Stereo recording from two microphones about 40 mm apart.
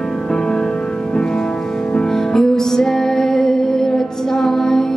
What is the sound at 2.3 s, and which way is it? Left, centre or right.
Music, centre.